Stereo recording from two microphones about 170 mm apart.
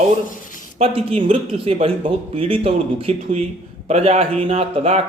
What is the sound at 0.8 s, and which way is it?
Speech, 35° right (ahead or behind).